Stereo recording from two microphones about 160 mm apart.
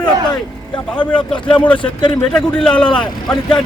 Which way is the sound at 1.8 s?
30° left (ahead or behind).